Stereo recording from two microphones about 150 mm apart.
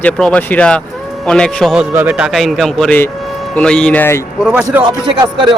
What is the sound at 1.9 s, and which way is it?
Speech, 15° right (ahead or behind).